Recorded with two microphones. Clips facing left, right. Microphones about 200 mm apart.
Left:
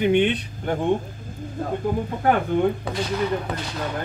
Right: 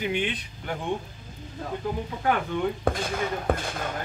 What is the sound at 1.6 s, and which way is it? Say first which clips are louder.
Speech: left 7 dB; 50° left (ahead or behind).